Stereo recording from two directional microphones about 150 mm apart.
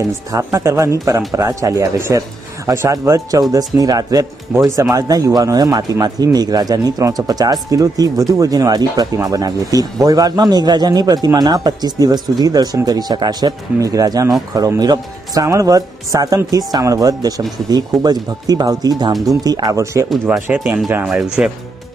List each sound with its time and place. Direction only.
0.3 s a man's voice: 20° right (ahead or behind)
4.5 s speech: 5° right (ahead or behind)
4.9 s a man's voice: 25° right (ahead or behind); by 21.5 s 5° right (ahead or behind)